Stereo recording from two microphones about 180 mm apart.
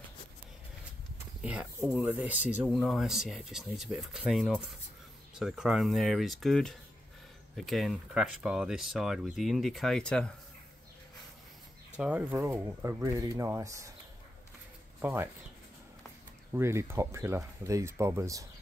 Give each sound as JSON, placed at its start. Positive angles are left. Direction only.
{"t": 1.4, "sound": "speech", "side_deg": -5}
{"t": 12.0, "sound": "speech", "side_deg": -10}
{"t": 15.0, "sound": "speech", "side_deg": -10}
{"t": 16.5, "sound": "speech", "side_deg": -15}